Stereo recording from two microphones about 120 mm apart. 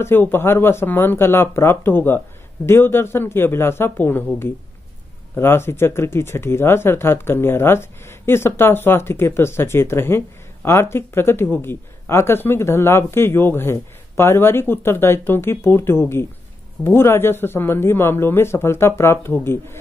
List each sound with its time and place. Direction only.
0.0 s speech: 20° left (ahead or behind)